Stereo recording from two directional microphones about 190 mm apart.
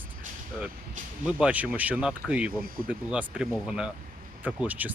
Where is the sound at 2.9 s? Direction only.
5° right (ahead or behind).